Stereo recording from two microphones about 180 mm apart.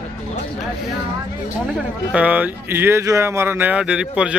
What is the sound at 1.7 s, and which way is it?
Speech, 5° right (ahead or behind).